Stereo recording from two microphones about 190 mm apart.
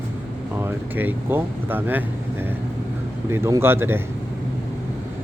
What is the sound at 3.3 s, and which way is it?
Speech, 15° right (ahead or behind).